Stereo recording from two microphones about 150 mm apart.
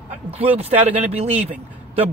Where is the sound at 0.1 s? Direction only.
40° right (ahead or behind).